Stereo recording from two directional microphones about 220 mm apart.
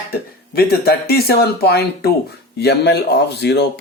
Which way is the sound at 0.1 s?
45° left (ahead or behind).